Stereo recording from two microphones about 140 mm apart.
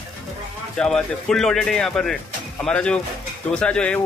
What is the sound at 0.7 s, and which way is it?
Speech, 5° left (ahead or behind).